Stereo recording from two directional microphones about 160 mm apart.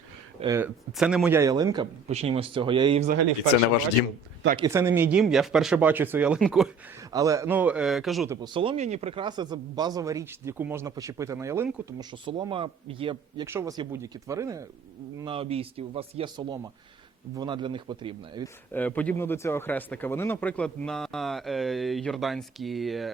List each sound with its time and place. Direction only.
0.6 s speech: 5° right (ahead or behind)
1.4 s speech: 20° right (ahead or behind)
2.0 s speech: 40° right (ahead or behind)
4.7 s speech: 15° right (ahead or behind)
7.1 s speech: 20° right (ahead or behind); by 8.3 s centre (ahead or behind)
8.3 s speech: 30° right (ahead or behind)
12.1 s speech: 30° right (ahead or behind)
13.4 s speech: 15° right (ahead or behind)
15.2 s speech: 35° right (ahead or behind)
18.4 s speech: 10° left (ahead or behind)